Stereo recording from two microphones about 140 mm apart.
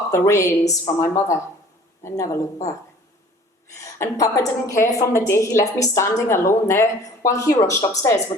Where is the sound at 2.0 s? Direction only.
20° left (ahead or behind).